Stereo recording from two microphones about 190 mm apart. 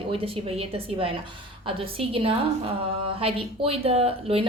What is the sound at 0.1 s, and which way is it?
A woman's voice, 30° right (ahead or behind).